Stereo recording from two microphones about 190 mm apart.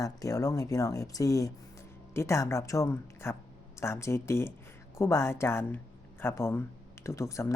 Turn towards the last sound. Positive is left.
turn(degrees=15)  # may be behind; listen again after turning